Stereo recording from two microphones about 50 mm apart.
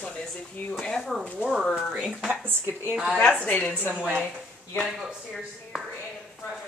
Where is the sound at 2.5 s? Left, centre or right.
Right.